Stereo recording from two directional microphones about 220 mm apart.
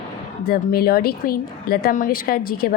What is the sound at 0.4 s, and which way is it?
A woman's voice, 45° left (ahead or behind).